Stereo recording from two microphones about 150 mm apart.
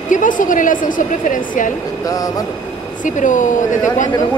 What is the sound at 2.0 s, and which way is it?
Speech, 25° left (ahead or behind).